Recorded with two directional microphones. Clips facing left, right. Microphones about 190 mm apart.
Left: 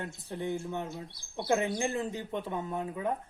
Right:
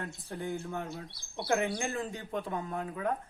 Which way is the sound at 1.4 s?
25° left (ahead or behind).